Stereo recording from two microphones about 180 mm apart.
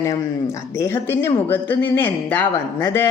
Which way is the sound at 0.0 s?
20° left (ahead or behind).